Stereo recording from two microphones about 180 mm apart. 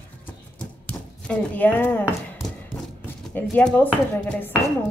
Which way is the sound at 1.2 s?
5° left (ahead or behind).